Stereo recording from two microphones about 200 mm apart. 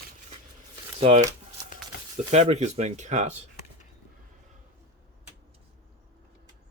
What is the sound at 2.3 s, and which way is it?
Speech, 35° right (ahead or behind).